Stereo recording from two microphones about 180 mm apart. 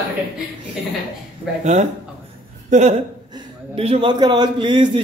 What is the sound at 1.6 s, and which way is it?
A man's voice, 40° right (ahead or behind).